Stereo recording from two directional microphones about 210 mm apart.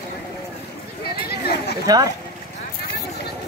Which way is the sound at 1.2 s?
50° left (ahead or behind).